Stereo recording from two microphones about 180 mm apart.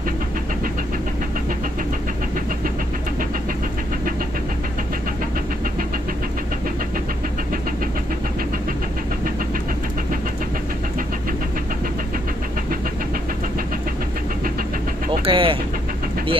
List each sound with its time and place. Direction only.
15.2 s vehicle: 30° right (ahead or behind)